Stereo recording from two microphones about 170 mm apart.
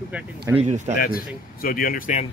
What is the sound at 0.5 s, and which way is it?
Speech, 40° right (ahead or behind).